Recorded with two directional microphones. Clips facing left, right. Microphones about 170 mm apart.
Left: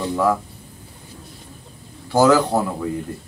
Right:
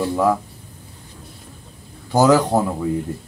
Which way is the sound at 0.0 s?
15° right (ahead or behind).